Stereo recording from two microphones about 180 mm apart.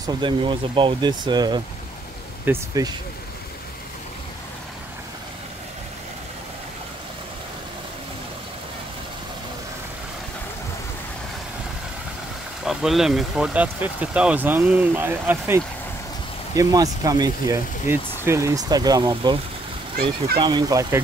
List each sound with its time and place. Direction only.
0.0 s speech: 25° right (ahead or behind)
12.6 s speech: centre (ahead or behind); by 19.3 s 20° right (ahead or behind)
20.3 s speech: 25° right (ahead or behind)